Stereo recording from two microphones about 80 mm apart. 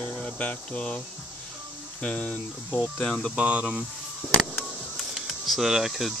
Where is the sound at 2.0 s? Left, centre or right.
Centre.